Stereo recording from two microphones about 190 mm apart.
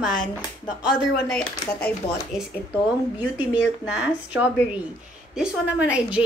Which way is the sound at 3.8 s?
5° right (ahead or behind).